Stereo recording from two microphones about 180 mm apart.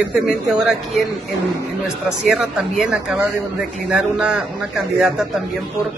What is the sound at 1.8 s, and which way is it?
Speech, 5° right (ahead or behind).